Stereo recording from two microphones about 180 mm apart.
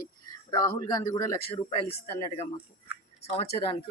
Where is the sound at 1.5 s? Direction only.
30° left (ahead or behind).